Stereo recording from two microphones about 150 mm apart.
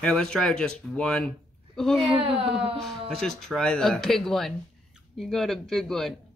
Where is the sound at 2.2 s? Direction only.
40° right (ahead or behind).